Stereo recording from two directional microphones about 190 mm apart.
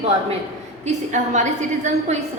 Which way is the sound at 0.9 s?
40° right (ahead or behind).